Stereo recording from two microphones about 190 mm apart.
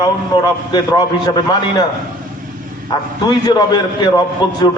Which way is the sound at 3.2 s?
20° left (ahead or behind).